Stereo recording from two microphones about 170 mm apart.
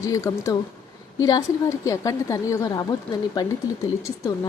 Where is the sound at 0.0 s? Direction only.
20° left (ahead or behind).